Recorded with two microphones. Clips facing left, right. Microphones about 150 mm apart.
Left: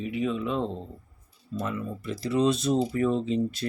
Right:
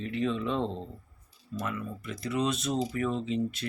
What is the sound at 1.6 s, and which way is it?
Speech, 30° left (ahead or behind).